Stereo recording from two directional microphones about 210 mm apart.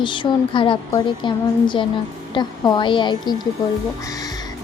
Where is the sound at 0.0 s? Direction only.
25° left (ahead or behind).